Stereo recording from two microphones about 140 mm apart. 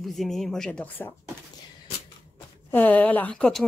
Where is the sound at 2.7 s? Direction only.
10° left (ahead or behind).